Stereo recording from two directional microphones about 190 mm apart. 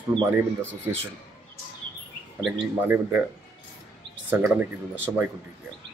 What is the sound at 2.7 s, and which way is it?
Speech, 10° right (ahead or behind).